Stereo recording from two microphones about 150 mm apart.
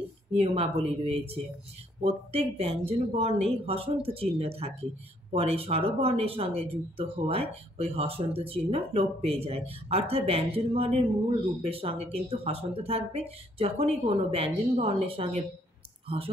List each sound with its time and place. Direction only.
0.4 s speech: 40° right (ahead or behind)